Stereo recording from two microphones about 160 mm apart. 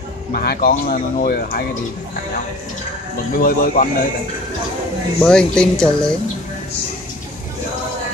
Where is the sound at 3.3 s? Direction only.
60° left (ahead or behind).